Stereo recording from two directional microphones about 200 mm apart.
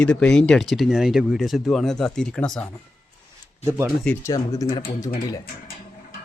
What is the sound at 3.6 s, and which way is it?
Speech, 15° right (ahead or behind).